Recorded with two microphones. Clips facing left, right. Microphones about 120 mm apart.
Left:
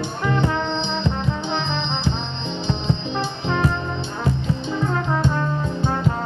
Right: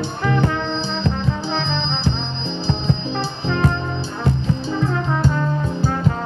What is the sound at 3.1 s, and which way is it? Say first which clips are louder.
Music: right 1 dB; 35° right (ahead or behind).